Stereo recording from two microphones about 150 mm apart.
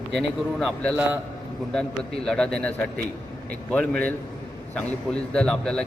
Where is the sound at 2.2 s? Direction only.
5° left (ahead or behind).